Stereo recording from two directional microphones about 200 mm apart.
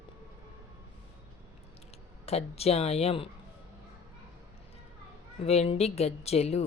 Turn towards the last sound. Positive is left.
turn(degrees=30)  # may be behind; listen again after turning